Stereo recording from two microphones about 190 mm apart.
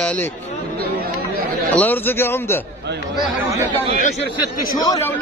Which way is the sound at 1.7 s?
10° left (ahead or behind).